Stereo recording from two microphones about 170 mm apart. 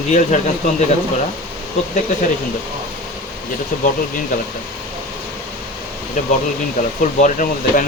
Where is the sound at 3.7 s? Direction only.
50° left (ahead or behind).